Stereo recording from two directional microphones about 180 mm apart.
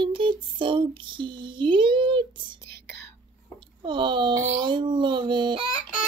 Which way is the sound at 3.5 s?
25° right (ahead or behind).